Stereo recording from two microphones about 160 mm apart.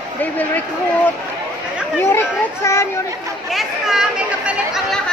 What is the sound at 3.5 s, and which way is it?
Chatter, 5° right (ahead or behind).